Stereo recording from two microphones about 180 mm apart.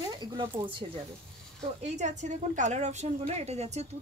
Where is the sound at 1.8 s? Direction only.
40° right (ahead or behind).